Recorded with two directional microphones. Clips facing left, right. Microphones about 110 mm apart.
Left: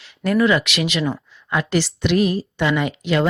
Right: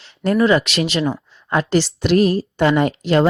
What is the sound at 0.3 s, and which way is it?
Speech, 30° right (ahead or behind).